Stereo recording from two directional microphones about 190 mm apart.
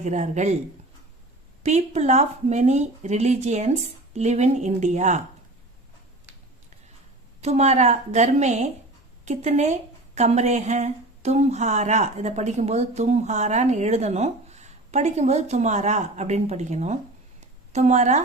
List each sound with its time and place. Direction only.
0.0 s speech: 40° right (ahead or behind)
1.6 s speech: 35° right (ahead or behind)
7.4 s a woman's voice: 35° right (ahead or behind)